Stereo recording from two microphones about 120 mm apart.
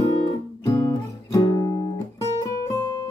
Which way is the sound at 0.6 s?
25° left (ahead or behind).